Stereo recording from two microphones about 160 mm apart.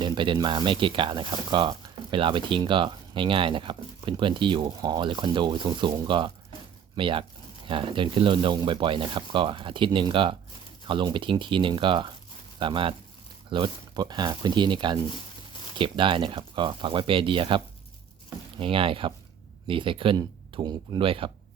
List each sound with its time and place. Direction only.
0.0 s speech: 30° right (ahead or behind)
18.6 s speech: 35° right (ahead or behind)